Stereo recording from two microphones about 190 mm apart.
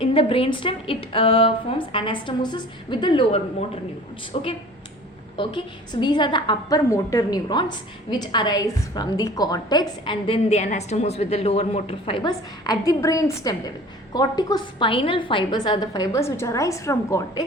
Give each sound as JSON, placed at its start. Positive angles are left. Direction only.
{"t": 0.0, "sound": "a woman's voice", "side_deg": 30}